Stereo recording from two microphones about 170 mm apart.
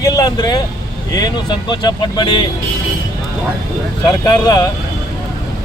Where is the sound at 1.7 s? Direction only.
25° left (ahead or behind).